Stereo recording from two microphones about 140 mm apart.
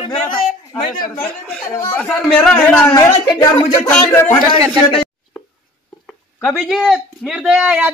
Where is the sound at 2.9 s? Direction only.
25° left (ahead or behind).